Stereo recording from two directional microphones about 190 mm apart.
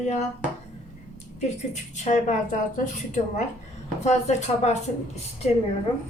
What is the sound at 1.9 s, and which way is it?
Speech, 40° left (ahead or behind).